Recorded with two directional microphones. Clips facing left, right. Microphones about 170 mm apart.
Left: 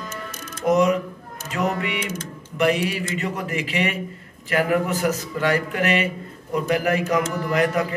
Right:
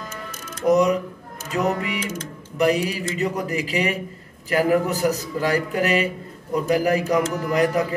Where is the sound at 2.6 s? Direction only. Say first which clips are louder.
Right 1 dB; 35° right (ahead or behind).